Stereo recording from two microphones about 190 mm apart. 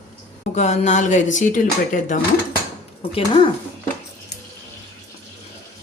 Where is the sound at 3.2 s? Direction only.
25° left (ahead or behind).